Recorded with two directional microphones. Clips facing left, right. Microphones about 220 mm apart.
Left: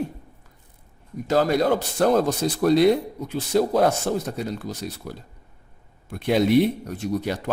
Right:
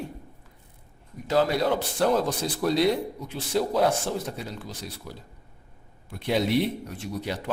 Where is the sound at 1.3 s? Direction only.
50° left (ahead or behind).